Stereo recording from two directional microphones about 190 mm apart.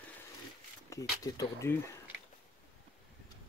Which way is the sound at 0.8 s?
20° left (ahead or behind).